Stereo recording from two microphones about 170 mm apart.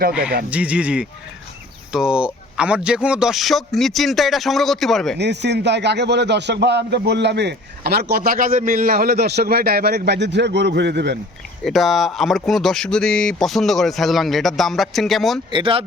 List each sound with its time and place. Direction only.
0.1 s speech: 5° right (ahead or behind)
5.1 s a man's voice: 90° right
11.6 s speech: centre (ahead or behind)
15.4 s speech: 30° right (ahead or behind)